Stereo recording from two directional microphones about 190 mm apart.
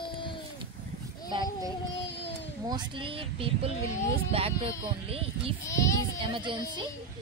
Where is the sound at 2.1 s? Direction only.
65° left (ahead or behind).